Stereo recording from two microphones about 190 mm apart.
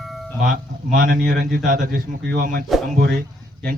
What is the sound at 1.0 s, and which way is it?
A man's voice, 45° right (ahead or behind).